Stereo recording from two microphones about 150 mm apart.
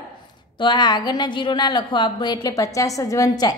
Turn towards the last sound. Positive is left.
turn(degrees=25)  # may be behind; listen again after turning